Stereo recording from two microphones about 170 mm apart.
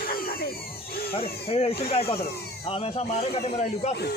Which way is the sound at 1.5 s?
35° left (ahead or behind).